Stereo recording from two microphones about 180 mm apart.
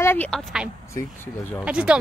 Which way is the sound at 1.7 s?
5° right (ahead or behind).